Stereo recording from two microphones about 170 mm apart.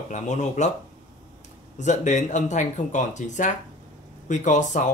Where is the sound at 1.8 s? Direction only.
45° left (ahead or behind).